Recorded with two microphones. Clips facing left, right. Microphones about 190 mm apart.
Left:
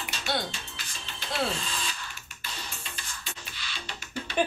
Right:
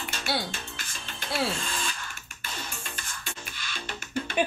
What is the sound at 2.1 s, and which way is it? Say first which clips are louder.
Music: right 2 dB; 50° right (ahead or behind).